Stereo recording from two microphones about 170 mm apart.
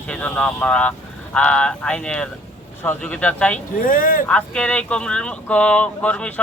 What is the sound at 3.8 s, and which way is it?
Speech, 55° left (ahead or behind).